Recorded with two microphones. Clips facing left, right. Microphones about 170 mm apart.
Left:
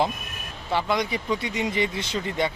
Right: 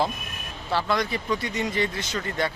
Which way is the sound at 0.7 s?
20° left (ahead or behind).